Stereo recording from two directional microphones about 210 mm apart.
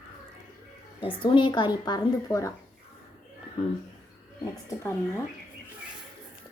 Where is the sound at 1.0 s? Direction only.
25° left (ahead or behind).